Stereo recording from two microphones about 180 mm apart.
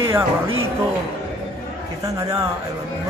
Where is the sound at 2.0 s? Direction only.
20° right (ahead or behind).